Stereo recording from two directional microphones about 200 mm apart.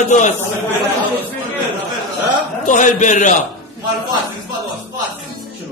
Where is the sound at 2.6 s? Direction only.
40° left (ahead or behind).